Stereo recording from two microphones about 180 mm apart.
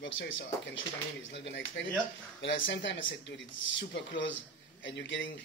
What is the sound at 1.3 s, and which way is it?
Speech, 70° left (ahead or behind).